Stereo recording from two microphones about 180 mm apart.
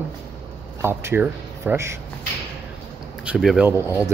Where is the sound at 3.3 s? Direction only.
5° right (ahead or behind).